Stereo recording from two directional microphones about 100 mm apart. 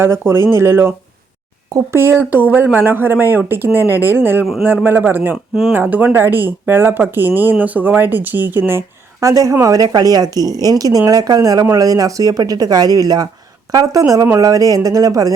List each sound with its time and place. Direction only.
0.0 s speech: 25° right (ahead or behind)
9.2 s a woman's voice: 35° right (ahead or behind)